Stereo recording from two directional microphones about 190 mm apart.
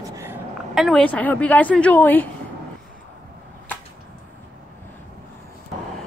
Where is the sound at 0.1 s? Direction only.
15° right (ahead or behind).